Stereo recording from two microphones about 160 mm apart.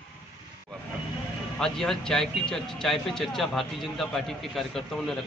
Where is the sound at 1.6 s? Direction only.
5° left (ahead or behind).